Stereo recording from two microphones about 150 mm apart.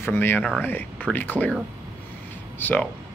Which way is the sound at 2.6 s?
10° left (ahead or behind).